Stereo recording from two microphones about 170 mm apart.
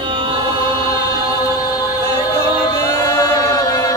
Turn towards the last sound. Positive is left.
turn(degrees=20)  # may be behind; listen again after turning